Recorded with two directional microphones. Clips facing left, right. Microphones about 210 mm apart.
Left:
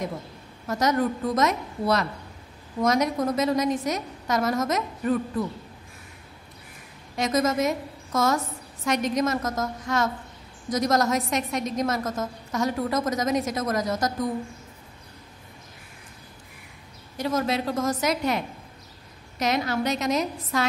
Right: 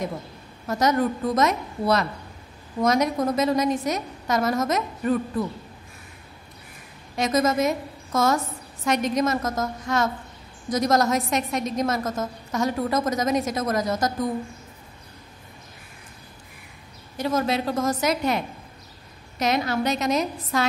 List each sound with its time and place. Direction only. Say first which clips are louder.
0.7 s a woman's voice: right 2 dB; 30° right (ahead or behind)
7.2 s a woman's voice: right 2 dB; 30° right (ahead or behind)
17.2 s a woman's voice: right 2 dB; 30° right (ahead or behind)